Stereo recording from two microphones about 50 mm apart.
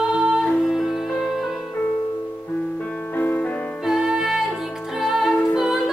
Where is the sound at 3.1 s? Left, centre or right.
Left.